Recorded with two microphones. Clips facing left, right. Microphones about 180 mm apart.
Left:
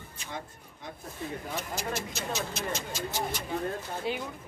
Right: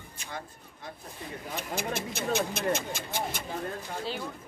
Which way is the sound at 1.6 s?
55° right (ahead or behind).